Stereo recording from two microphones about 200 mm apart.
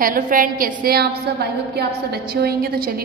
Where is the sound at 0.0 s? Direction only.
45° right (ahead or behind).